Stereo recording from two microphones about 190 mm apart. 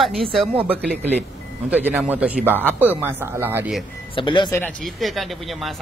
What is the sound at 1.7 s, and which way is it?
Speech, 10° right (ahead or behind).